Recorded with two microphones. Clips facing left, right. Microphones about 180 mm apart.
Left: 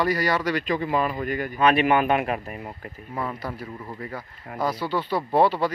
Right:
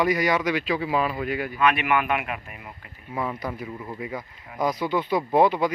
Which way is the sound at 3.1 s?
10° right (ahead or behind).